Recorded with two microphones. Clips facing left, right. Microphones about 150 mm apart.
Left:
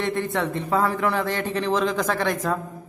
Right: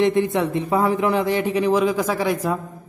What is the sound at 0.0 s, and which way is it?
A man's voice, 15° right (ahead or behind).